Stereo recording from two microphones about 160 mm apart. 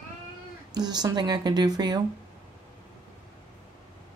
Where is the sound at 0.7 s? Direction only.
25° right (ahead or behind).